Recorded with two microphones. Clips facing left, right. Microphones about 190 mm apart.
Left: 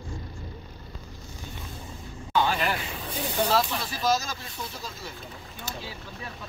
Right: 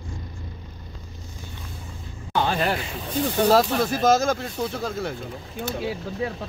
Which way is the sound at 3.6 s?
50° right (ahead or behind).